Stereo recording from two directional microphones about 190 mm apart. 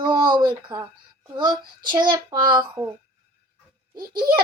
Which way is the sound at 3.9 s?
20° right (ahead or behind).